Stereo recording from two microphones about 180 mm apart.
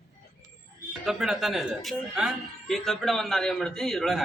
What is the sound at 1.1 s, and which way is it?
A man's voice, centre (ahead or behind).